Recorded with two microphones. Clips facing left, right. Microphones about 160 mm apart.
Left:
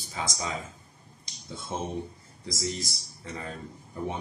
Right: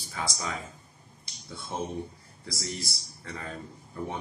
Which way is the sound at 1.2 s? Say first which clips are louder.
Left 2 dB; 20° left (ahead or behind).